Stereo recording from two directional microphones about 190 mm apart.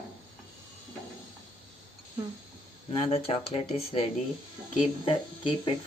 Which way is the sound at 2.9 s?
30° left (ahead or behind).